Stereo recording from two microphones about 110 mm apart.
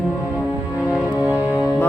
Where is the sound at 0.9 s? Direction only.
10° right (ahead or behind).